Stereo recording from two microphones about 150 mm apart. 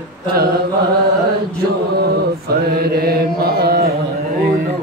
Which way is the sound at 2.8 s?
80° right.